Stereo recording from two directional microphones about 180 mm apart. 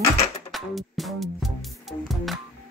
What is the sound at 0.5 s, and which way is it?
Music, centre (ahead or behind).